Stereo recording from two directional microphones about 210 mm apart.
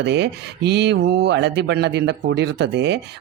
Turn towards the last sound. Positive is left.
turn(degrees=-55)  # may be behind; listen again after turning